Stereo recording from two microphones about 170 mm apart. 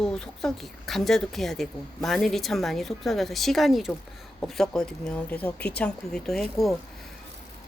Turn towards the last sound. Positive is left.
turn(degrees=0)  # may be behind; listen again after turning